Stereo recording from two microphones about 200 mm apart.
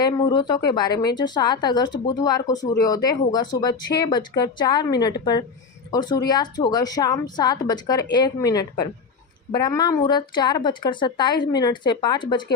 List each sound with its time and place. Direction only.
0.0 s speech: 20° left (ahead or behind)